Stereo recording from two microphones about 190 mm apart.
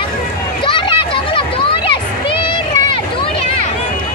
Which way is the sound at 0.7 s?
25° left (ahead or behind).